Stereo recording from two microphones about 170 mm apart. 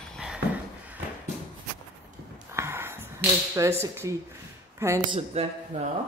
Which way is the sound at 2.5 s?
15° right (ahead or behind).